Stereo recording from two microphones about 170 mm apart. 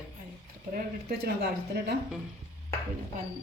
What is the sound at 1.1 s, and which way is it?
Speech, 65° right (ahead or behind).